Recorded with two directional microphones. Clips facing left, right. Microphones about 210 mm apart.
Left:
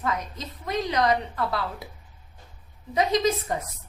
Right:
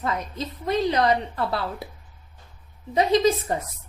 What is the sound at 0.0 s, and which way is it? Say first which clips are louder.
A woman's voice: right 2 dB; 30° right (ahead or behind).